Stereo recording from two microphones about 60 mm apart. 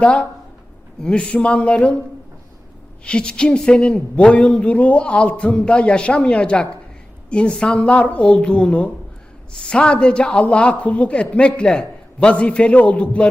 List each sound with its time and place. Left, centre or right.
0.0 s a man's voice: left
3.0 s a man's voice: centre